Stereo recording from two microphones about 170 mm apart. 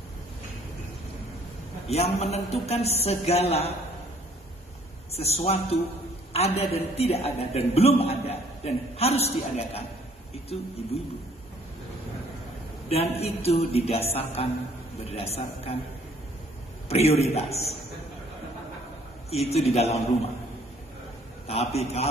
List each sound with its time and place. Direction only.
1.9 s a woman's voice: 40° left (ahead or behind)
5.1 s a woman's voice: 35° left (ahead or behind)
12.9 s a woman's voice: 35° left (ahead or behind)
16.9 s a woman's voice: 40° left (ahead or behind)
19.4 s a woman's voice: 40° left (ahead or behind)
21.5 s a woman's voice: 40° left (ahead or behind)